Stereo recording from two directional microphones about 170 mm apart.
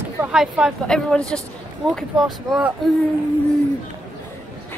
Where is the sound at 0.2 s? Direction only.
5° right (ahead or behind).